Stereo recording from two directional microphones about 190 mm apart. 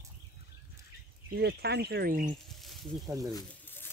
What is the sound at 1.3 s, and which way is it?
Speech, 60° right (ahead or behind).